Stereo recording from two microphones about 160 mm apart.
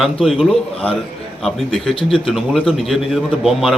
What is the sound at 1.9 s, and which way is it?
Speech, 35° left (ahead or behind).